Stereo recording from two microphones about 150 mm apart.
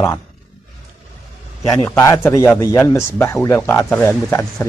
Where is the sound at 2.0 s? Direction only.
20° left (ahead or behind).